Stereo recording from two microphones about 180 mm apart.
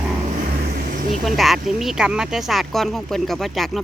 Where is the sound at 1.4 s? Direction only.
Centre (ahead or behind).